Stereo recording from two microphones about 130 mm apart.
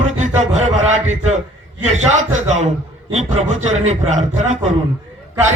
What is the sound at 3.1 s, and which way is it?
A man's voice, 60° right (ahead or behind).